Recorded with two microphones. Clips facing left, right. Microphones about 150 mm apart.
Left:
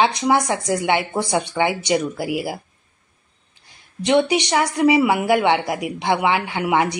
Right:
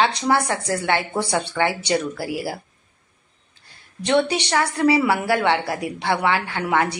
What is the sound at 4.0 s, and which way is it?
Speech, 15° left (ahead or behind).